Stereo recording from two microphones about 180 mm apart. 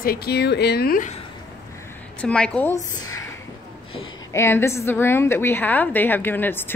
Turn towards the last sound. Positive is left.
turn(degrees=10)  # may be behind; listen again after turning